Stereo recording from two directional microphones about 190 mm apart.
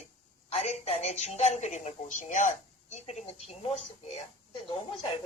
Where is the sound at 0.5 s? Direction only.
35° left (ahead or behind).